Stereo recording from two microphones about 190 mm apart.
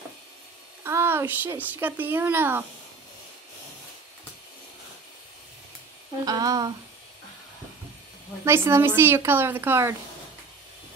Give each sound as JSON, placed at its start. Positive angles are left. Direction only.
{"t": 0.8, "sound": "speech", "side_deg": -10}
{"t": 6.2, "sound": "speech", "side_deg": -20}
{"t": 8.5, "sound": "speech", "side_deg": -15}